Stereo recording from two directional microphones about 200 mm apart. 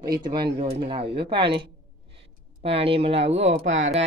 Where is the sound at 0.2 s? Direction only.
25° right (ahead or behind).